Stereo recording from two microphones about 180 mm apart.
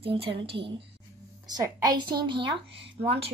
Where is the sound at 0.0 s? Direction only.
30° right (ahead or behind).